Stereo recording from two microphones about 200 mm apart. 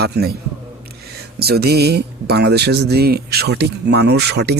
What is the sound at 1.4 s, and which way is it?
Speech, 50° right (ahead or behind).